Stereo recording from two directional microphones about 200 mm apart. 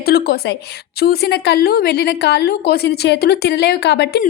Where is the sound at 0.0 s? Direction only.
50° left (ahead or behind).